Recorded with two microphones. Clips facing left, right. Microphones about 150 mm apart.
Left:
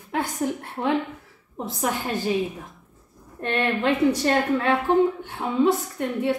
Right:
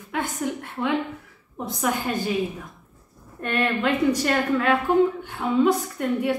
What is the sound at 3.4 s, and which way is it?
A woman's voice, 30° left (ahead or behind).